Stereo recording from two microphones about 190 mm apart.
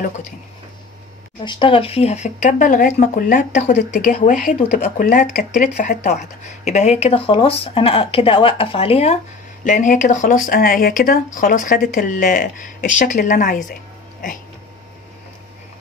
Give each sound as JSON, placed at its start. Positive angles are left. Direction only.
{"t": 1.4, "sound": "speech", "side_deg": 25}